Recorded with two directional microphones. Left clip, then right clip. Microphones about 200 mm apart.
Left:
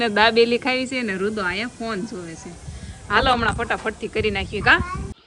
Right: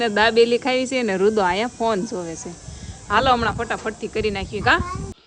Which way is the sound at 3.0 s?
10° right (ahead or behind).